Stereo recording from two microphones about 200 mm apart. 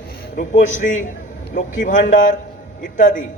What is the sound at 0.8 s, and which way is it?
A man's voice, 40° left (ahead or behind).